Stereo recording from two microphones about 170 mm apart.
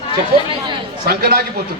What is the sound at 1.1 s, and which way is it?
Speech, 65° right (ahead or behind).